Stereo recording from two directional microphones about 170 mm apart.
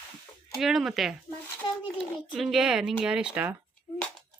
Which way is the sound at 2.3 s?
Centre (ahead or behind).